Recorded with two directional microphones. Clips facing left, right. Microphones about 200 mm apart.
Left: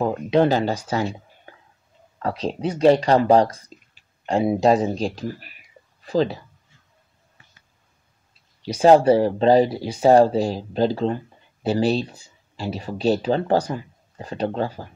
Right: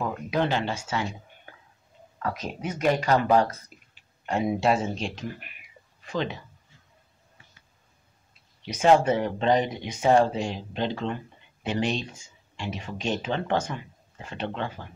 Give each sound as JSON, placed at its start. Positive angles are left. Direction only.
{"t": 0.0, "sound": "speech", "side_deg": 35}
{"t": 3.7, "sound": "a sound", "side_deg": 90}
{"t": 4.3, "sound": "speech", "side_deg": 30}
{"t": 8.6, "sound": "speech", "side_deg": 35}